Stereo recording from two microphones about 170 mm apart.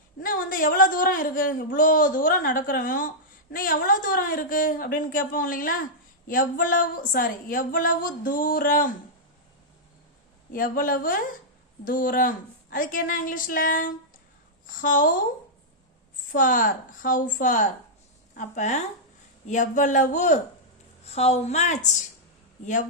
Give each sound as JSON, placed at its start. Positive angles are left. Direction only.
{"t": 0.2, "sound": "a woman's voice", "side_deg": 55}
{"t": 10.5, "sound": "a woman's voice", "side_deg": 55}
{"t": 16.3, "sound": "a woman's voice", "side_deg": 55}